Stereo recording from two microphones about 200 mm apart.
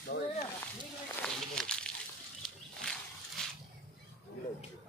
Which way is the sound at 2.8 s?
Centre (ahead or behind).